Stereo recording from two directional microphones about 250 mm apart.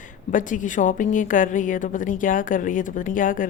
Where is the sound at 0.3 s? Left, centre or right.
Left.